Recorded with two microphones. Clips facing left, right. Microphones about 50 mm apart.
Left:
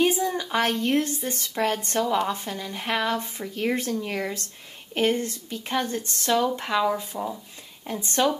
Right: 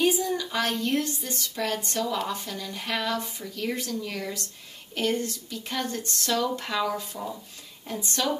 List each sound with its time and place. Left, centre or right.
0.0 s a woman's voice: left